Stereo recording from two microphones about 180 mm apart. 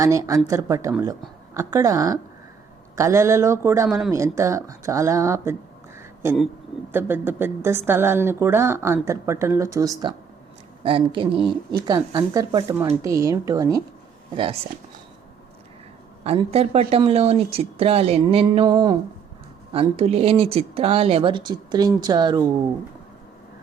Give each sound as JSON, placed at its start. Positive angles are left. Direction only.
{"t": 0.0, "sound": "a woman's voice", "side_deg": -15}
{"t": 16.2, "sound": "speech", "side_deg": -35}